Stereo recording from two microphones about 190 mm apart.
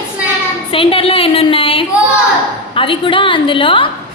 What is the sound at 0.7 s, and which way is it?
A woman's voice, 30° left (ahead or behind).